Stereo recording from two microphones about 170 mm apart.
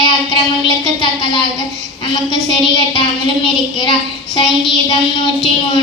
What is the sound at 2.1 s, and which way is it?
Child singing, 25° left (ahead or behind).